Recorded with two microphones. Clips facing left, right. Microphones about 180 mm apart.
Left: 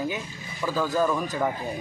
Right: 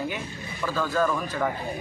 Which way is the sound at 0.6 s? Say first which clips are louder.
Left 1 dB; 10° left (ahead or behind).